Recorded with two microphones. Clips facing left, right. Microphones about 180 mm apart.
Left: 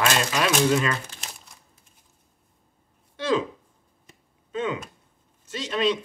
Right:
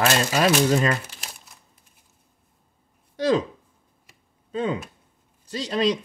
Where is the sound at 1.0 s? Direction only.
5° right (ahead or behind).